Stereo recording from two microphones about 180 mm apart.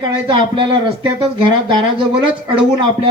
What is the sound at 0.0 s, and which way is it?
Speech, 25° right (ahead or behind).